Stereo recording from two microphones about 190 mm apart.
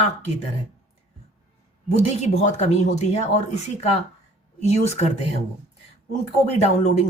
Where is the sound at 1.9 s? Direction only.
35° left (ahead or behind).